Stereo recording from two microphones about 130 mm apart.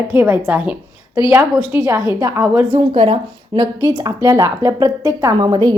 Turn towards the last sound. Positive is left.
turn(degrees=-35)  # may be behind; listen again after turning